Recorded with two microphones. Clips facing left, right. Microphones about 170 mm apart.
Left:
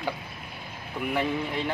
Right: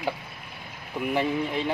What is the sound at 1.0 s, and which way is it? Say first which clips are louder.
Speech: right 2 dB; 5° right (ahead or behind).